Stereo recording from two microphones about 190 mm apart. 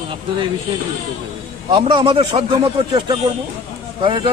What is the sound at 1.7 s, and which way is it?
A man's voice, 25° right (ahead or behind).